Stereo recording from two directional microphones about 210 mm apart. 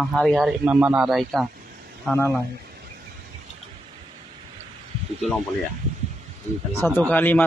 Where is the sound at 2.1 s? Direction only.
10° left (ahead or behind).